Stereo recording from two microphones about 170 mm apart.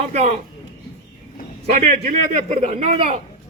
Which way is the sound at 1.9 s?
50° right (ahead or behind).